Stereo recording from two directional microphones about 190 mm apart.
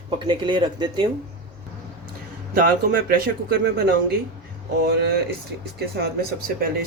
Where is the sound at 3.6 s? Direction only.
60° right (ahead or behind).